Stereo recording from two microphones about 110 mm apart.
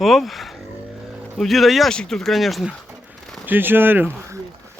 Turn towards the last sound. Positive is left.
turn(degrees=-20)  # may be behind; listen again after turning